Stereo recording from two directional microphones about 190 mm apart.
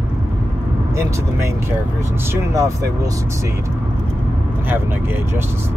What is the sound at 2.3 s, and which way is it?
Speech, 15° right (ahead or behind).